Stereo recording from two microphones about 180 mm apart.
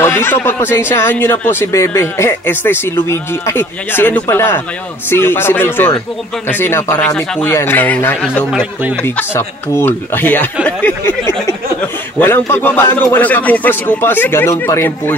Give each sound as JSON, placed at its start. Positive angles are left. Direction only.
{"t": 0.0, "sound": "speech", "side_deg": 15}
{"t": 8.5, "sound": "speech", "side_deg": -5}
{"t": 9.0, "sound": "speech", "side_deg": 10}